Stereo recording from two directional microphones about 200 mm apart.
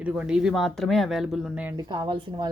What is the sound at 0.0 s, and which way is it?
Speech, 5° right (ahead or behind).